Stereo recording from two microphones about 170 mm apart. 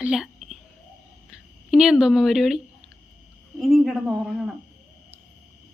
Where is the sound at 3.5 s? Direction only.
Centre (ahead or behind).